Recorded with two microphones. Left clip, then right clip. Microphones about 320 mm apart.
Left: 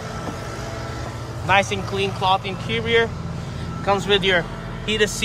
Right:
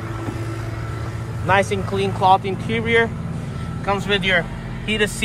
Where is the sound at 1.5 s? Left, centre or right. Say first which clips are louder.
Right 1 dB; centre.